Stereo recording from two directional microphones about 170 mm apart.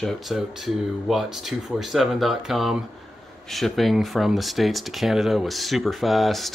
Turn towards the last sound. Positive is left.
turn(degrees=0)  # may be behind; listen again after turning